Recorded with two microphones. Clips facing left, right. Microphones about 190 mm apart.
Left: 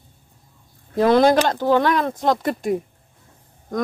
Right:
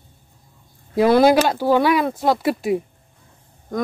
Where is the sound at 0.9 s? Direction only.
10° right (ahead or behind).